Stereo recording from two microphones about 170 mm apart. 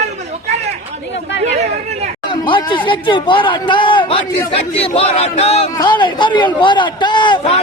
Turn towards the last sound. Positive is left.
turn(degrees=25)  # may be behind; listen again after turning